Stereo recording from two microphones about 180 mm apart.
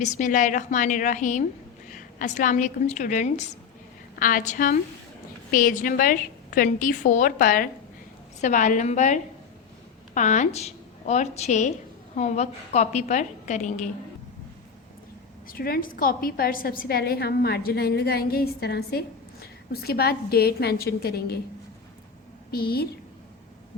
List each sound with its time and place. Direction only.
0.0 s a woman's voice: 45° left (ahead or behind)
15.4 s a woman's voice: 55° left (ahead or behind)
22.5 s a woman's voice: 60° left (ahead or behind)